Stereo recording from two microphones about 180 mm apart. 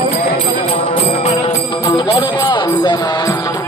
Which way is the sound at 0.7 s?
35° left (ahead or behind).